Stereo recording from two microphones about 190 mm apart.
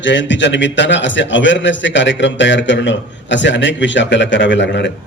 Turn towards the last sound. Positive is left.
turn(degrees=65)  # may be behind; listen again after turning